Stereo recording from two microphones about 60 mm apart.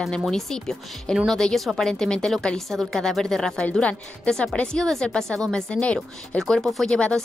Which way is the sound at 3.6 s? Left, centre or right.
Left.